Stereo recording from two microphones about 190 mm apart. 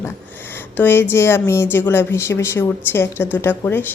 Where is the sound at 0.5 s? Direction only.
10° left (ahead or behind).